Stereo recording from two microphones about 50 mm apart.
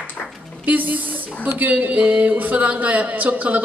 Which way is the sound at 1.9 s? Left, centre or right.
Right.